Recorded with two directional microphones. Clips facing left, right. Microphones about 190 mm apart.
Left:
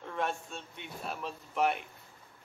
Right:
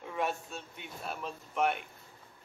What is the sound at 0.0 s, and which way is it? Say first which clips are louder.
Speech: even; 5° right (ahead or behind).